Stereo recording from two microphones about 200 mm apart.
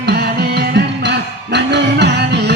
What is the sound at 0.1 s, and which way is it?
Music, 55° right (ahead or behind).